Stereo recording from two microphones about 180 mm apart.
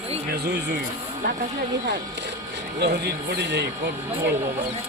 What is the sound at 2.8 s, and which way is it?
Speech, 65° right (ahead or behind).